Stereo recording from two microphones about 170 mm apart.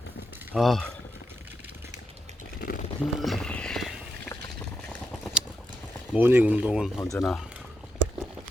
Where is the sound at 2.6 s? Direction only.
60° left (ahead or behind).